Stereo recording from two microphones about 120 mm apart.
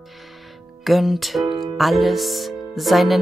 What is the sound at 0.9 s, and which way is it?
Speech, centre (ahead or behind).